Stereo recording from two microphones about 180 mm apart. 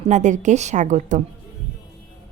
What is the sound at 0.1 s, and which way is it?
A woman's voice, 40° right (ahead or behind).